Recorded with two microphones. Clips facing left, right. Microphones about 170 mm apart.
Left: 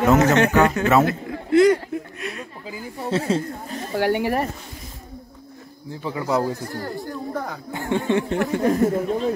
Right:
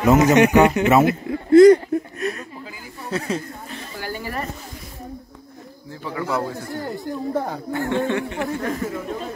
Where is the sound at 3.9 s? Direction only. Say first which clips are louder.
Left 11 dB; 70° left (ahead or behind).